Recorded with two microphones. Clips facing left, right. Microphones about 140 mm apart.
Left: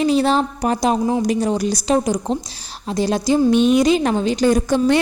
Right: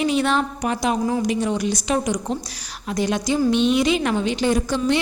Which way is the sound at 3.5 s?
45° left (ahead or behind).